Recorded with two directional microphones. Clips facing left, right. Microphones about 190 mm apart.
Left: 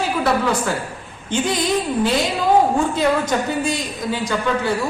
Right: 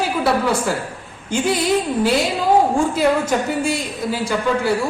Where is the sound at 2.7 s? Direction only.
5° right (ahead or behind).